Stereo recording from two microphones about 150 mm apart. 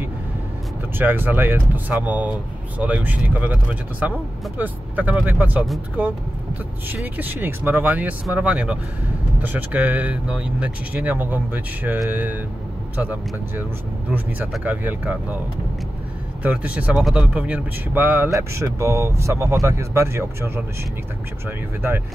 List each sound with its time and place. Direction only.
0.9 s speech: 15° right (ahead or behind)
6.9 s speech: 10° right (ahead or behind)
14.6 s speech: 10° right (ahead or behind)
16.4 s speech: 10° right (ahead or behind)